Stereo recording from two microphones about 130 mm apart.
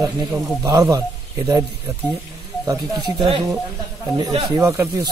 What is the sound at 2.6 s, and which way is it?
Speech, 30° right (ahead or behind).